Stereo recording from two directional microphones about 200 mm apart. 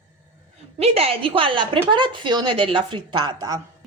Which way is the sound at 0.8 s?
30° right (ahead or behind).